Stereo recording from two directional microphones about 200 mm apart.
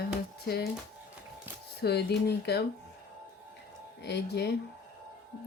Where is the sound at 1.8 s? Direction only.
55° left (ahead or behind).